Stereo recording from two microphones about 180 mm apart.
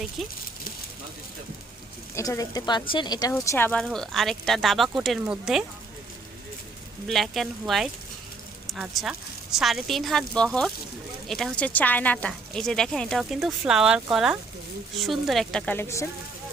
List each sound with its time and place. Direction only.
0.2 s speech: centre (ahead or behind)
2.1 s speech: 15° left (ahead or behind); by 5.6 s 5° right (ahead or behind)
7.1 s speech: centre (ahead or behind)